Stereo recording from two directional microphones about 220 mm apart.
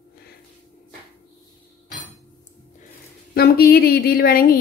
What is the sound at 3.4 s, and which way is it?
A woman's voice, 45° left (ahead or behind).